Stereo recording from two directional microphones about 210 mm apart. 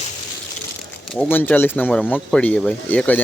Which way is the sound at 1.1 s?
10° left (ahead or behind).